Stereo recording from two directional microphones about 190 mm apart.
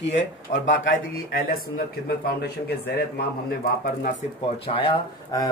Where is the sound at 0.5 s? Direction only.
45° left (ahead or behind).